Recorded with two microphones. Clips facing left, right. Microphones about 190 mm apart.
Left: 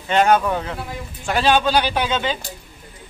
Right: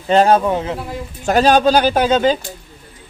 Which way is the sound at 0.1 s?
30° right (ahead or behind).